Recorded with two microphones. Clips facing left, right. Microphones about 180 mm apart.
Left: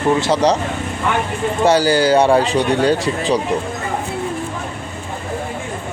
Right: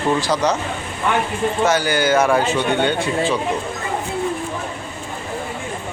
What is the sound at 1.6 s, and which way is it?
A man's voice, 35° left (ahead or behind).